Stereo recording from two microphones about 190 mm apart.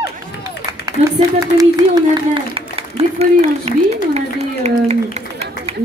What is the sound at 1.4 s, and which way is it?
Speech, 20° right (ahead or behind).